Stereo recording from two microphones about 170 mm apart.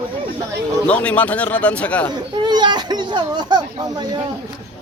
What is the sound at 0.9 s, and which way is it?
Speech, 10° left (ahead or behind).